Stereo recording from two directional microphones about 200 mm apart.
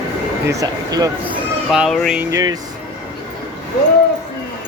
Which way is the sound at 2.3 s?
15° right (ahead or behind).